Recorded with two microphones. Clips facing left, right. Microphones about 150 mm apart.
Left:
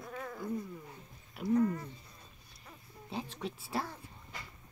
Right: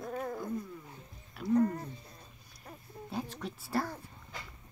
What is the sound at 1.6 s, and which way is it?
Speech, 40° right (ahead or behind).